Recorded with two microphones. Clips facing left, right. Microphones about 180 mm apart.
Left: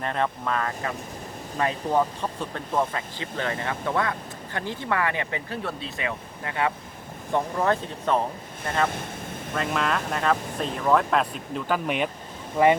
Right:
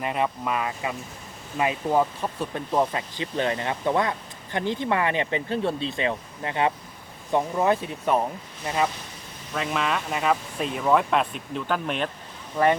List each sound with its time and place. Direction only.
0.0 s speech: 10° right (ahead or behind)
9.6 s speech: centre (ahead or behind)